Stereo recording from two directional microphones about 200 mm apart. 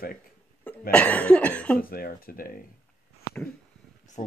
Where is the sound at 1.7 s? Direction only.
45° left (ahead or behind).